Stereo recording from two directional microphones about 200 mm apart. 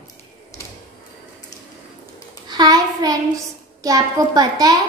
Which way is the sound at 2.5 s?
20° right (ahead or behind).